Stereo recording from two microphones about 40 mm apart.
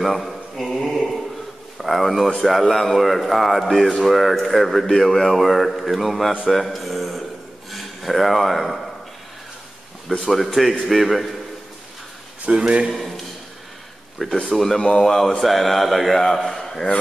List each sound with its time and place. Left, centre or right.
0.0 s mantra: centre
0.7 s a sound: centre
1.8 s speech: centre
6.5 s a sound: centre
7.7 s speech: centre
10.3 s speech: centre
12.4 s speech: right
12.9 s a sound: centre
14.2 s speech: centre
14.8 s a man's voice: left
15.0 s speech: centre